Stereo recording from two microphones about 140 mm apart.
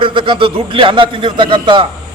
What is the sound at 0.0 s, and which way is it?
A man's voice, 35° right (ahead or behind).